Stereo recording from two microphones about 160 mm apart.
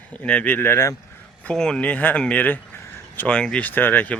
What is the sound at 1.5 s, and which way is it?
Speech, 5° left (ahead or behind).